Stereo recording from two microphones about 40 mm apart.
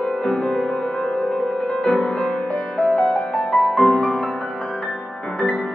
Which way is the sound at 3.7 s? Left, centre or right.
Centre.